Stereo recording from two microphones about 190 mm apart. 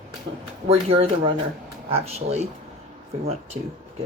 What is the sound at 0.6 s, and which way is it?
A man's voice, 30° right (ahead or behind).